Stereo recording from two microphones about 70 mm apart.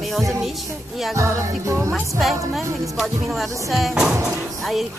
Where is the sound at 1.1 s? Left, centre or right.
Right.